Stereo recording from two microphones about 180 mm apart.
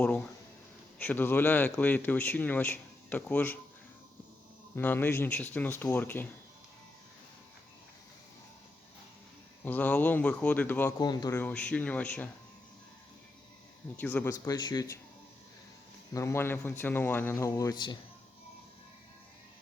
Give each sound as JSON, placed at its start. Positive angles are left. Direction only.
{"t": 0.9, "sound": "speech", "side_deg": 10}
{"t": 4.7, "sound": "speech", "side_deg": 10}
{"t": 9.6, "sound": "speech", "side_deg": 10}
{"t": 11.0, "sound": "speech", "side_deg": 25}
{"t": 13.9, "sound": "speech", "side_deg": 10}
{"t": 14.3, "sound": "speech", "side_deg": 20}
{"t": 16.1, "sound": "speech", "side_deg": 15}